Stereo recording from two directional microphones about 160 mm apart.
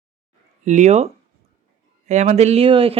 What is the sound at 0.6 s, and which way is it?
Speech, 50° right (ahead or behind).